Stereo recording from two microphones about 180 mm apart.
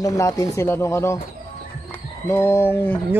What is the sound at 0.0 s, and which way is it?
Speech, 20° left (ahead or behind).